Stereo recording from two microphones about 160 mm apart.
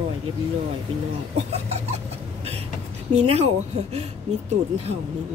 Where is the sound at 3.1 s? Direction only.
40° right (ahead or behind).